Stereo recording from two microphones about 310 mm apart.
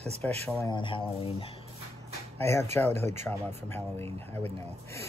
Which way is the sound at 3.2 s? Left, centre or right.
Centre.